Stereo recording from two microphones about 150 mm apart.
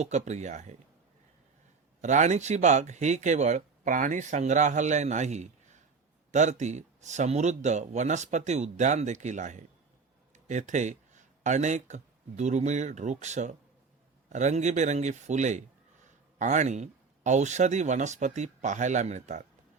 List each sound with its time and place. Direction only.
0.0 s speech: 50° right (ahead or behind)
2.0 s speech: 50° right (ahead or behind)